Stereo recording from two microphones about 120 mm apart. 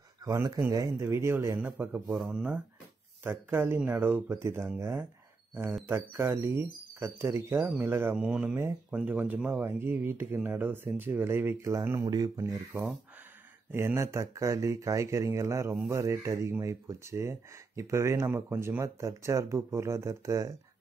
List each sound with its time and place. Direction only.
0.2 s a man's voice: 25° right (ahead or behind); by 2.6 s 10° right (ahead or behind)
3.3 s speech: 20° right (ahead or behind)
8.2 s a man's voice: 10° right (ahead or behind); by 20.5 s 25° right (ahead or behind)